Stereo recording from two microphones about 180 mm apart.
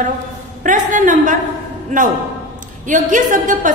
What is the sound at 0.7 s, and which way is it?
A woman's voice, 45° right (ahead or behind).